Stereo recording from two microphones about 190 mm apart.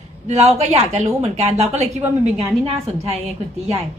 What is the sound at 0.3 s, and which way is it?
A woman's voice, 35° right (ahead or behind).